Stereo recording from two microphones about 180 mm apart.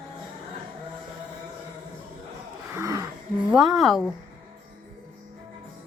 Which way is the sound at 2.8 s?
20° right (ahead or behind).